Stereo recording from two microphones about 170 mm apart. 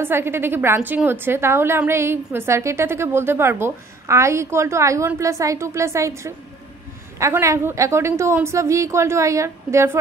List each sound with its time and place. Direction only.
0.0 s a woman's voice: 15° right (ahead or behind)